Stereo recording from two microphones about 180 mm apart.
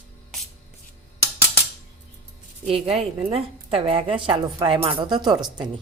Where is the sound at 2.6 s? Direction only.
30° right (ahead or behind).